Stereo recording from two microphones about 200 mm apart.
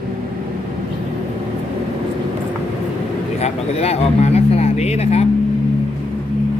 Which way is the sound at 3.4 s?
30° left (ahead or behind).